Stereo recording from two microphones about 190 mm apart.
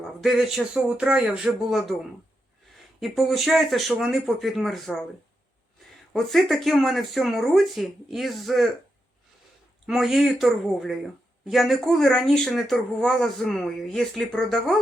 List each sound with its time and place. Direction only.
0.0 s speech: centre (ahead or behind)
3.0 s speech: centre (ahead or behind)
5.8 s a sound: centre (ahead or behind)
6.1 s speech: centre (ahead or behind)
9.8 s speech: centre (ahead or behind)